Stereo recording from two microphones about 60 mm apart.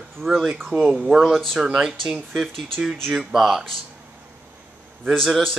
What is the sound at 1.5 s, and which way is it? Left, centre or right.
Speech, centre.